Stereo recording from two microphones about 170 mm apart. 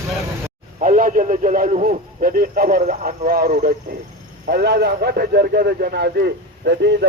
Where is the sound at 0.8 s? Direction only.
50° right (ahead or behind).